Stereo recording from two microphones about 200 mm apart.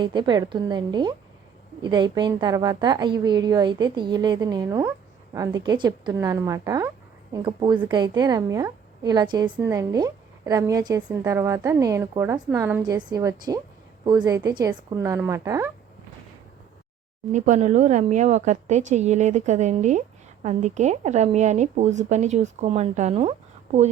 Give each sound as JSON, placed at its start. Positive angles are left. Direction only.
{"t": 0.0, "sound": "a woman's voice", "side_deg": -25}
{"t": 17.3, "sound": "a woman's voice", "side_deg": -35}